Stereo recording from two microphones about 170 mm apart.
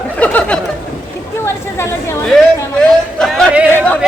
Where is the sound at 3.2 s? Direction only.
Centre (ahead or behind).